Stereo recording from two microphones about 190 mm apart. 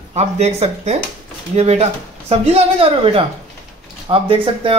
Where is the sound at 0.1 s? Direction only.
35° right (ahead or behind).